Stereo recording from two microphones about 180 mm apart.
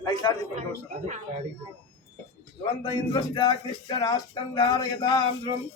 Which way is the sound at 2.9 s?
25° left (ahead or behind).